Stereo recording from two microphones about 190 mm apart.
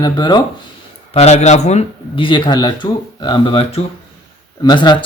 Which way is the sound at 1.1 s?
35° left (ahead or behind).